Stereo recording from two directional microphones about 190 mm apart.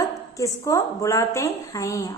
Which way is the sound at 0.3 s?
15° left (ahead or behind).